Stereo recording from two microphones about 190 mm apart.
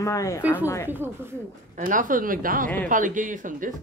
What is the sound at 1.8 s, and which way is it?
Speech, 45° right (ahead or behind).